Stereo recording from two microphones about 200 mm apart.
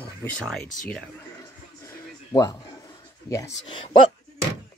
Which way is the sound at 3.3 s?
20° left (ahead or behind).